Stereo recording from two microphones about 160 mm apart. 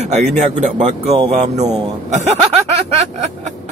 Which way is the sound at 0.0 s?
45° right (ahead or behind).